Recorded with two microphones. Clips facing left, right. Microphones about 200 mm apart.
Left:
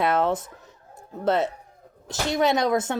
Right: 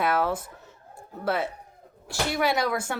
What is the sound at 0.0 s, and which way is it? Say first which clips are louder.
Speech: left 3 dB; 25° left (ahead or behind).